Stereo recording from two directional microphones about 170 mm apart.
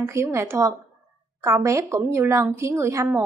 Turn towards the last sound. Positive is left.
turn(degrees=-15)  # may be behind; listen again after turning